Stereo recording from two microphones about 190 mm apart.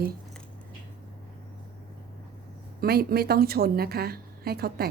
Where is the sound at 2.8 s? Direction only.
55° right (ahead or behind).